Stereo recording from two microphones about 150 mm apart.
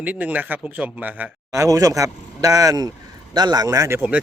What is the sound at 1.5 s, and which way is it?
A man's voice, 20° right (ahead or behind).